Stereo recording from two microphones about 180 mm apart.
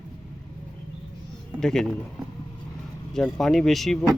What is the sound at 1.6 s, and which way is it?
Speech, 5° left (ahead or behind).